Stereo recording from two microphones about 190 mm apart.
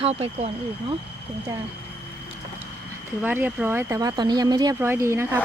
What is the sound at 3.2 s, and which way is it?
Speech, 10° right (ahead or behind).